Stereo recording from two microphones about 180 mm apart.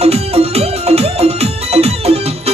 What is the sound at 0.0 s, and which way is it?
Music, 35° right (ahead or behind).